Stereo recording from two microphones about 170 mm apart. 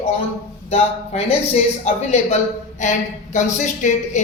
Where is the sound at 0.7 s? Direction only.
40° left (ahead or behind).